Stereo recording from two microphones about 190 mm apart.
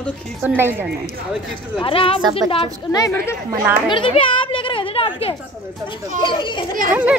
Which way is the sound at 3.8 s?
25° left (ahead or behind).